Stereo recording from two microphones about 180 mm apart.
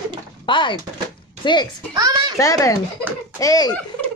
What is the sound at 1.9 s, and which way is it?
Speech, 20° right (ahead or behind).